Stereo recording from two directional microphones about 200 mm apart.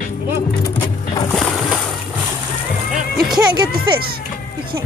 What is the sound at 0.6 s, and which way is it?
Music, 15° left (ahead or behind).